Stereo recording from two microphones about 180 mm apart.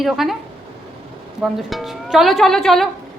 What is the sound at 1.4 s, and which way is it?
A woman's voice, centre (ahead or behind).